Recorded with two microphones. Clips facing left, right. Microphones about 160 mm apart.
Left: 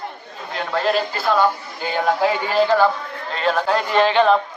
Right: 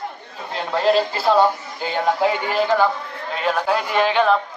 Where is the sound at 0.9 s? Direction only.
30° right (ahead or behind).